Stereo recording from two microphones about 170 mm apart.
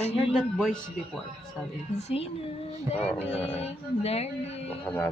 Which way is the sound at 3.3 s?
35° left (ahead or behind).